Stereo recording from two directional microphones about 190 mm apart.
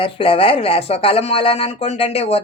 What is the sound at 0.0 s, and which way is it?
Speech, 30° left (ahead or behind).